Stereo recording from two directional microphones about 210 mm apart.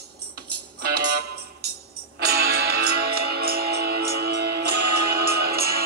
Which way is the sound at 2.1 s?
50° right (ahead or behind).